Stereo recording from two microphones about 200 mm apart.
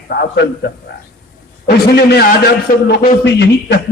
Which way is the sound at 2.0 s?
55° left (ahead or behind).